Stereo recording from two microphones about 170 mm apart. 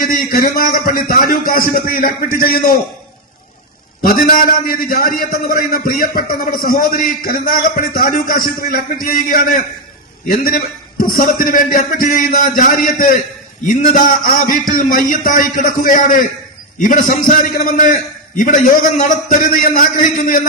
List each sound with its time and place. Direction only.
0.0 s a man's voice: 60° left (ahead or behind)
4.0 s a man's voice: 55° left (ahead or behind)